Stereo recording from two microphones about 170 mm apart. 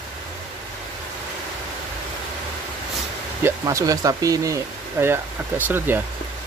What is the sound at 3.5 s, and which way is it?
Speech, 20° right (ahead or behind).